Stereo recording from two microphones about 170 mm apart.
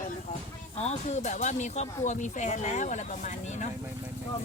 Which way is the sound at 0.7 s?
40° left (ahead or behind).